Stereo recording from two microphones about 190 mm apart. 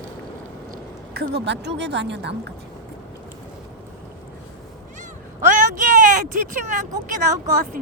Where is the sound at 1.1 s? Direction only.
60° right (ahead or behind).